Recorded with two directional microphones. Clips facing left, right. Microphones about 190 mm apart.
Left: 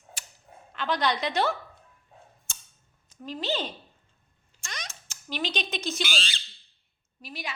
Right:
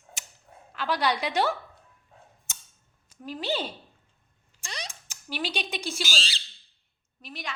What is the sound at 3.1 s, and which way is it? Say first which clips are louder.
Speech: even; 10° right (ahead or behind).